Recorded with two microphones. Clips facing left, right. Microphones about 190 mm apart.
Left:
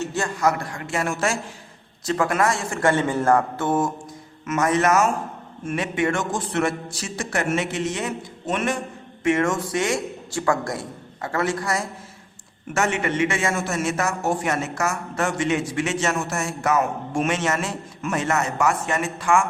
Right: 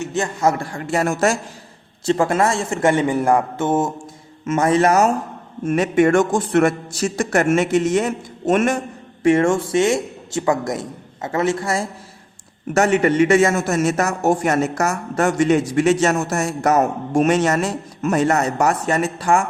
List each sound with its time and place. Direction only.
0.0 s speech: 20° right (ahead or behind); by 1.4 s 40° right (ahead or behind)
2.0 s a man's voice: 25° right (ahead or behind); by 8.8 s 45° right (ahead or behind)
9.2 s a man's voice: 30° right (ahead or behind)
12.7 s speech: 40° right (ahead or behind)